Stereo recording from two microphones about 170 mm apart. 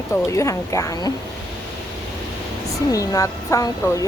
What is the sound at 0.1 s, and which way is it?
A woman's voice, 15° left (ahead or behind).